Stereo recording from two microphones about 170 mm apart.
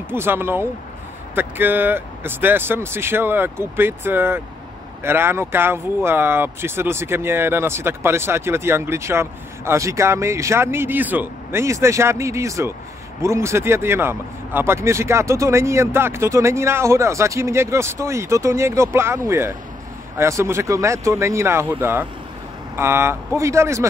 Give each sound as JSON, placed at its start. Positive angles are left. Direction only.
{"t": 0.1, "sound": "speech", "side_deg": -15}